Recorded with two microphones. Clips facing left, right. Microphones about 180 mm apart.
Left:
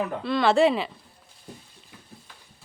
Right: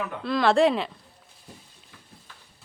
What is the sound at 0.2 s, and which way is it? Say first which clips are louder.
Speech: even; centre (ahead or behind).